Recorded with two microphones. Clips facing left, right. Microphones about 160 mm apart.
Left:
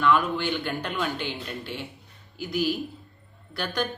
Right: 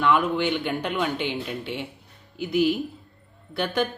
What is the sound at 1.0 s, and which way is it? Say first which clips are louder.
Speech: right 4 dB; 70° right (ahead or behind).